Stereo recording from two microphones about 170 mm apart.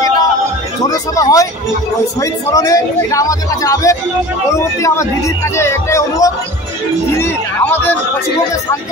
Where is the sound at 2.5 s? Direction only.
20° left (ahead or behind).